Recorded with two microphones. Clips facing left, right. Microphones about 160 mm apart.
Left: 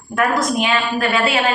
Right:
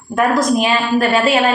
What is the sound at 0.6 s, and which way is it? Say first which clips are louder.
Speech: right 4 dB; 40° right (ahead or behind).